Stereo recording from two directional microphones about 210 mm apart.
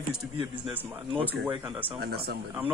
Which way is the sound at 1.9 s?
50° right (ahead or behind).